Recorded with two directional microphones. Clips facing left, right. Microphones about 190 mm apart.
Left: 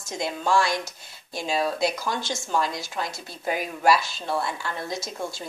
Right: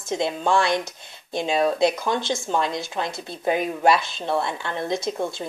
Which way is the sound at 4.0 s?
55° right (ahead or behind).